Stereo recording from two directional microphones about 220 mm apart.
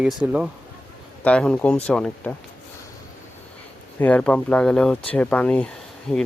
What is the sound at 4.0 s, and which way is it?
Speech, 5° left (ahead or behind).